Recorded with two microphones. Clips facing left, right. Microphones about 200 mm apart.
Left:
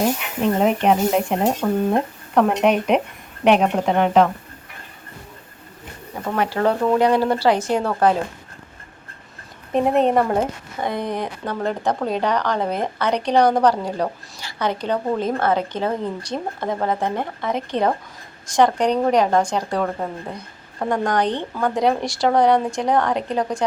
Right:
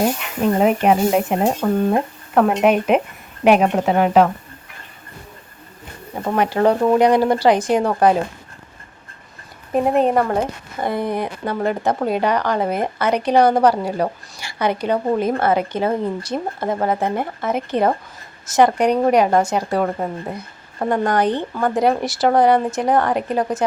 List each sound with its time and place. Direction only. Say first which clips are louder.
0.0 s speech: right 1 dB; 5° right (ahead or behind)
6.2 s speech: right 3 dB; 20° right (ahead or behind)
9.7 s speech: right 1 dB; centre (ahead or behind)